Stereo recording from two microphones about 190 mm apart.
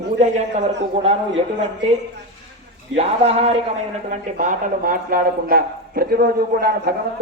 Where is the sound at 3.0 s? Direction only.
35° right (ahead or behind).